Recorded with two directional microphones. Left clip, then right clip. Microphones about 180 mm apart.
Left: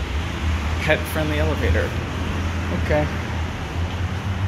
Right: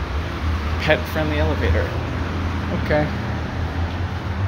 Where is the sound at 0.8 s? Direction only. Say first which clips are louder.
Right 2 dB; centre (ahead or behind).